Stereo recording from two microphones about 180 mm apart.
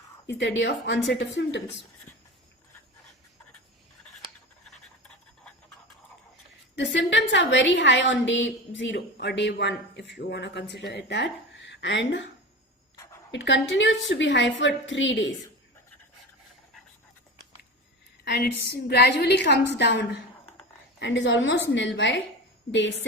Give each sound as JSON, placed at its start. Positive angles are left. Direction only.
{"t": 0.3, "sound": "a woman's voice", "side_deg": 85}
{"t": 1.1, "sound": "a woman's voice", "side_deg": 75}
{"t": 6.7, "sound": "a woman's voice", "side_deg": 80}
{"t": 13.3, "sound": "a woman's voice", "side_deg": 85}
{"t": 18.3, "sound": "a woman's voice", "side_deg": 70}
{"t": 21.0, "sound": "a woman's voice", "side_deg": 85}